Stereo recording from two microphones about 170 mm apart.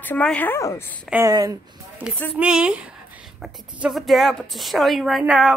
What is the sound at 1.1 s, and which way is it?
Speech, 20° right (ahead or behind).